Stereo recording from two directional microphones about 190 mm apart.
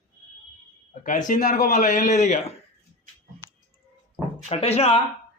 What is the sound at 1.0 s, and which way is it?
A man's voice, 40° left (ahead or behind).